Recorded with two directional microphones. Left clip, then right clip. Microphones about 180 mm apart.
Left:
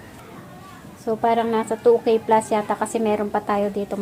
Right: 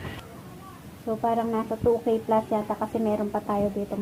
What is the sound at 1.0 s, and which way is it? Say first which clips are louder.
A woman's voice: left 6 dB; 45° left (ahead or behind).